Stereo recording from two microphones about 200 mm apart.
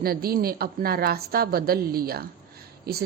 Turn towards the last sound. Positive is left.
turn(degrees=-50)  # may be behind; listen again after turning